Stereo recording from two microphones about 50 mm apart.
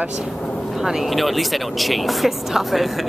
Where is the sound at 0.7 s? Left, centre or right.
Centre.